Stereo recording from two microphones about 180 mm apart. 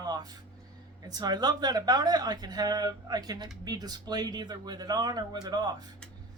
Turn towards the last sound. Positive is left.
turn(degrees=-20)  # may be behind; listen again after turning